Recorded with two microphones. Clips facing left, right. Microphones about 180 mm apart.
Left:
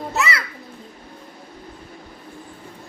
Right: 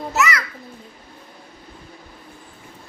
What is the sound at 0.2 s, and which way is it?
Children playing, 30° left (ahead or behind).